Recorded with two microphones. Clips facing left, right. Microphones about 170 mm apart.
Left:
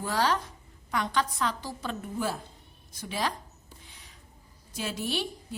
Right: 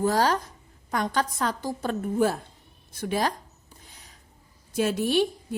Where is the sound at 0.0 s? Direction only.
45° right (ahead or behind).